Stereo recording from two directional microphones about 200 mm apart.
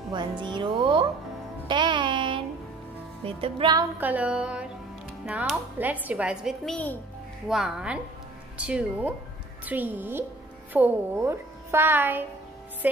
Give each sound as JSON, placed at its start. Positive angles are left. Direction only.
{"t": 0.1, "sound": "speech", "side_deg": -25}
{"t": 1.7, "sound": "music", "side_deg": -25}
{"t": 3.3, "sound": "a woman's voice", "side_deg": -30}